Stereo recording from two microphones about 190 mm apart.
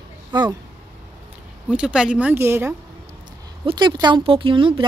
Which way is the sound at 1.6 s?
5° right (ahead or behind).